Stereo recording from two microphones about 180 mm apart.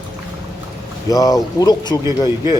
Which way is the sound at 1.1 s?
20° left (ahead or behind).